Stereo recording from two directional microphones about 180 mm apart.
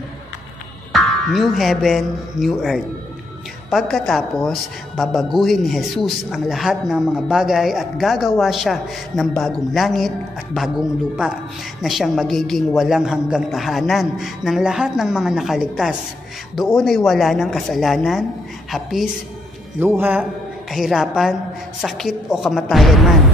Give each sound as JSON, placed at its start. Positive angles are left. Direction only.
{"t": 0.9, "sound": "a woman's voice", "side_deg": 0}